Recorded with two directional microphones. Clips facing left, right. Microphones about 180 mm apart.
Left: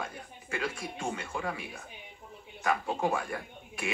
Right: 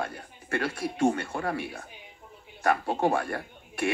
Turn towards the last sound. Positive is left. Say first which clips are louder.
# right 8 dB
turn(degrees=-65)  # may be behind; listen again after turning